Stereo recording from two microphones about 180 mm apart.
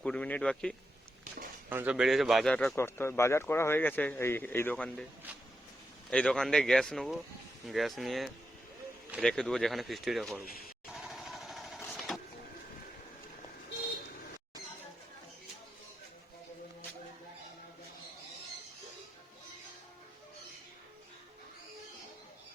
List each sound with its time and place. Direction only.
0.0 s speech: 5° left (ahead or behind)
1.7 s speech: 10° right (ahead or behind)
2.7 s speech: 15° left (ahead or behind)
6.1 s speech: 5° left (ahead or behind)
10.4 s speech: 55° left (ahead or behind)
10.9 s vehicle: centre (ahead or behind)